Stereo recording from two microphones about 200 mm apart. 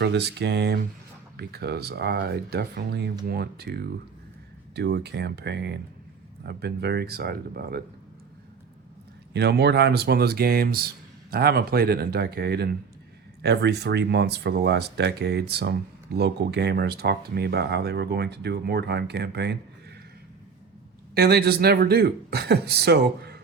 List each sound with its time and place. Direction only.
0.0 s speech: 55° right (ahead or behind)
9.3 s speech: 55° right (ahead or behind)
21.2 s speech: 55° right (ahead or behind)